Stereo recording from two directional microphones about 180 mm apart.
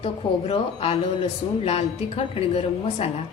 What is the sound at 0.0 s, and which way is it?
A man's voice, 35° left (ahead or behind).